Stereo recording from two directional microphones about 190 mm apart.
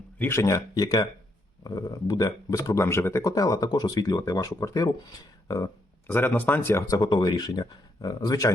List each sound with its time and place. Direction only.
0.2 s speech: 15° left (ahead or behind)